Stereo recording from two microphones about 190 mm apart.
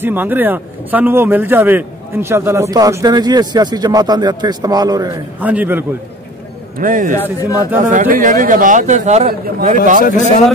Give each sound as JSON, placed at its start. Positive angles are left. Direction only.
{"t": 0.0, "sound": "a man's voice", "side_deg": -10}
{"t": 5.4, "sound": "a man's voice", "side_deg": -10}
{"t": 6.8, "sound": "speech", "side_deg": -45}
{"t": 7.2, "sound": "speech", "side_deg": 15}
{"t": 7.8, "sound": "speech", "side_deg": -45}